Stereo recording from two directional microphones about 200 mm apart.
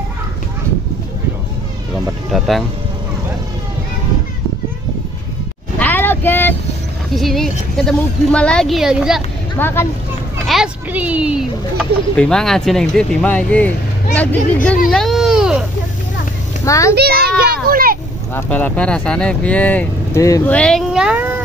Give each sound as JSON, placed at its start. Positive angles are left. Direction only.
{"t": 2.3, "sound": "vehicle", "side_deg": 0}
{"t": 5.8, "sound": "a sound", "side_deg": 10}
{"t": 7.2, "sound": "a woman's voice", "side_deg": 0}
{"t": 9.6, "sound": "speech", "side_deg": 10}
{"t": 10.4, "sound": "speech", "side_deg": 0}
{"t": 14.9, "sound": "baby cry", "side_deg": 0}
{"t": 16.6, "sound": "a child's voice", "side_deg": 15}
{"t": 16.9, "sound": "children playing", "side_deg": -50}
{"t": 18.3, "sound": "speech", "side_deg": 5}
{"t": 20.5, "sound": "speech", "side_deg": 5}